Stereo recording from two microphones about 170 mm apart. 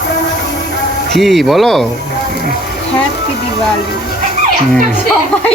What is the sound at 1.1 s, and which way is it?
Speech, centre (ahead or behind).